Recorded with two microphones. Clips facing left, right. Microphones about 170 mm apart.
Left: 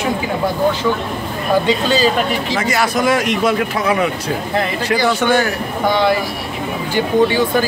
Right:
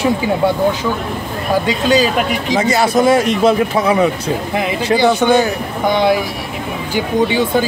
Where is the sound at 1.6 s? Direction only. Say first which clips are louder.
Right 2 dB; 10° right (ahead or behind).